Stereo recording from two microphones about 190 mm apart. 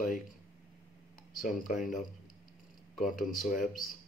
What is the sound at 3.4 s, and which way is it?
Speech, 45° left (ahead or behind).